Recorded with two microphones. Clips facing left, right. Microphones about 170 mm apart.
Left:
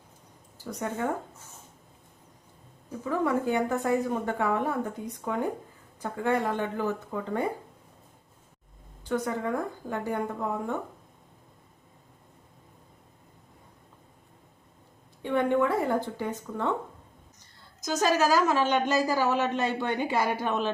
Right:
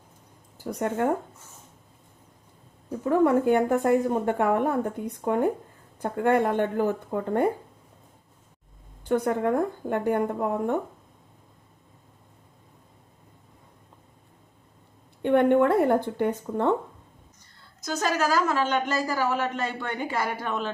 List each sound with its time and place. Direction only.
0.6 s speech: 55° right (ahead or behind)
3.0 s a woman's voice: 55° right (ahead or behind)
9.0 s speech: 55° right (ahead or behind)
15.2 s a woman's voice: 60° right (ahead or behind)
17.8 s speech: 15° left (ahead or behind)